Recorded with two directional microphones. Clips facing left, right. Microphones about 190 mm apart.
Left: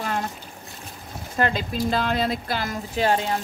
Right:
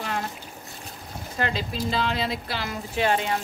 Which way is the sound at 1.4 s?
50° left (ahead or behind).